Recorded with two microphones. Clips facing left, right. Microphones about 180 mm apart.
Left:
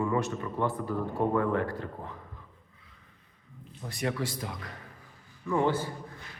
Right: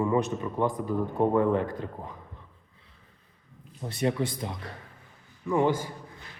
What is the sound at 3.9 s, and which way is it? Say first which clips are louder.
A man's voice: right 4 dB; 25° right (ahead or behind).